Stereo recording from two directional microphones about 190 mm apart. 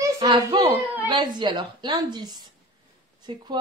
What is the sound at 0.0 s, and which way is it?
Whimper, 20° right (ahead or behind).